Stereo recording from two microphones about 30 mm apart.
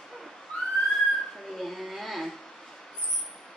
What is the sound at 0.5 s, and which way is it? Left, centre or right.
Whistling, left.